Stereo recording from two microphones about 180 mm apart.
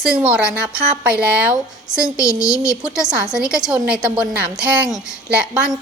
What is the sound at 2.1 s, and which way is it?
Speech, 15° left (ahead or behind).